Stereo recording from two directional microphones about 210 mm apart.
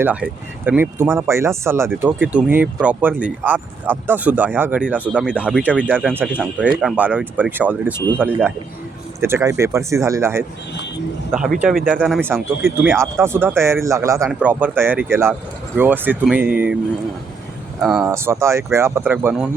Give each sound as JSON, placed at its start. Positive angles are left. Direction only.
{"t": 0.0, "sound": "speech", "side_deg": -10}
{"t": 5.3, "sound": "speech", "side_deg": 5}
{"t": 12.6, "sound": "speech", "side_deg": -10}
{"t": 17.7, "sound": "speech", "side_deg": 0}
{"t": 18.0, "sound": "speech", "side_deg": -10}